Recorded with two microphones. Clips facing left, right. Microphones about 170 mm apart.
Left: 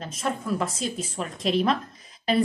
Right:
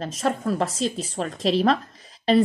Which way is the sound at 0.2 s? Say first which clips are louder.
Right 3 dB; 35° right (ahead or behind).